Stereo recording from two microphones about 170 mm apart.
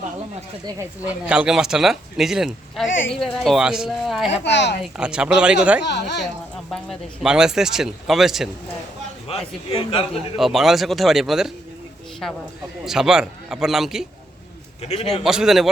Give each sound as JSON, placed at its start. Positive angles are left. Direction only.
{"t": 1.0, "sound": "speech", "side_deg": -5}
{"t": 4.3, "sound": "speech", "side_deg": 90}
{"t": 4.8, "sound": "speech", "side_deg": -5}
{"t": 5.8, "sound": "speech", "side_deg": 90}
{"t": 6.7, "sound": "speech", "side_deg": 0}
{"t": 9.3, "sound": "a man's voice", "side_deg": 35}
{"t": 10.3, "sound": "speech", "side_deg": 0}
{"t": 12.8, "sound": "speech", "side_deg": -5}
{"t": 14.8, "sound": "a man's voice", "side_deg": 40}
{"t": 15.2, "sound": "speech", "side_deg": -5}